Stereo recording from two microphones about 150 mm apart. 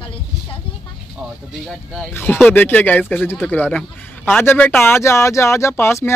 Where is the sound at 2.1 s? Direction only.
15° left (ahead or behind).